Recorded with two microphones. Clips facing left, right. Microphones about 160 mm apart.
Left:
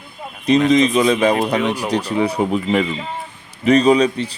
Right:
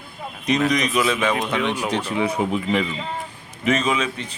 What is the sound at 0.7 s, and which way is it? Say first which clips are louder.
Speech: left 7 dB; 25° left (ahead or behind).